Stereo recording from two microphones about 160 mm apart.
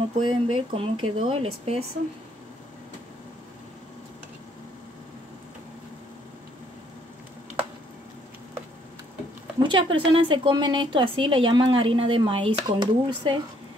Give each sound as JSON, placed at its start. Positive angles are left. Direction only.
{"t": 0.3, "sound": "a woman's voice", "side_deg": -35}
{"t": 9.6, "sound": "a woman's voice", "side_deg": -30}